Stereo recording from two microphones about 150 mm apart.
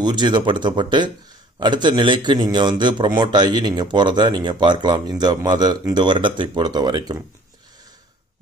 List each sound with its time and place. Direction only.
0.0 s a man's voice: 30° right (ahead or behind)